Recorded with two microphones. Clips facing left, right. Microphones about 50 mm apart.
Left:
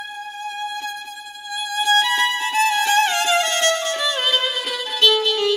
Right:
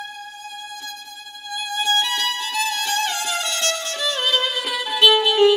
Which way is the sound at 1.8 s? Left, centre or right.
Centre.